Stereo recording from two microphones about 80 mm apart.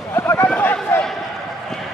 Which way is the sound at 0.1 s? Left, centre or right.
Left.